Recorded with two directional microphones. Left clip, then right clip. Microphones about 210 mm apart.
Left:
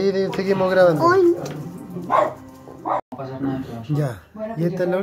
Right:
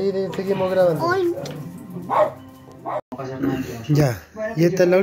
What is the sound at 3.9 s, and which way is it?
Speech, 20° right (ahead or behind).